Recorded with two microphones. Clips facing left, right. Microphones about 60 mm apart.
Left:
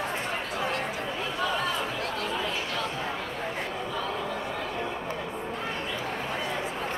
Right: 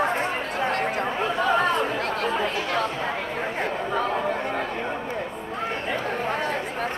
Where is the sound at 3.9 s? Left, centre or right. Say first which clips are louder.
Right 8 dB; right.